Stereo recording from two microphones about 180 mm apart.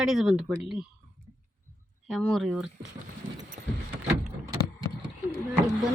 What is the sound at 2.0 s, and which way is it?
Speech, centre (ahead or behind).